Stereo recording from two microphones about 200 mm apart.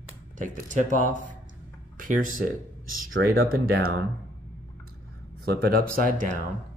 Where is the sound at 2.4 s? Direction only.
45° right (ahead or behind).